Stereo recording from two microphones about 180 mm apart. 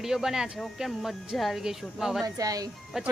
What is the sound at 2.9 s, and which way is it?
Speech, 5° right (ahead or behind).